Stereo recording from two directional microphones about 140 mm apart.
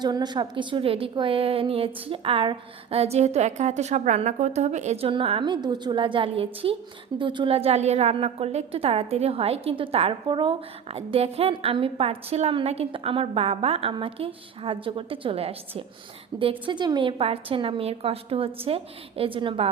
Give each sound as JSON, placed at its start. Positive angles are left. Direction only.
{"t": 0.0, "sound": "a woman's voice", "side_deg": -30}